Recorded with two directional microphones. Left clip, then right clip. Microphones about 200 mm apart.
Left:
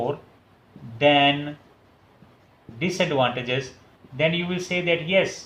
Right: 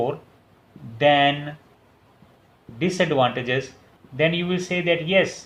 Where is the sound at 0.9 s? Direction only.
40° right (ahead or behind).